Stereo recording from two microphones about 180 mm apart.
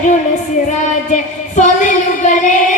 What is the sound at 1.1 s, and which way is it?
Singing, 40° left (ahead or behind).